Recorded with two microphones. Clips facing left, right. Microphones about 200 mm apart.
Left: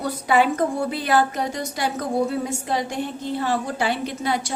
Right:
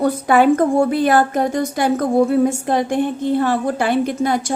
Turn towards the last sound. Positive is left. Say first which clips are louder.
# right 6 dB
turn(degrees=-50)  # may be behind; listen again after turning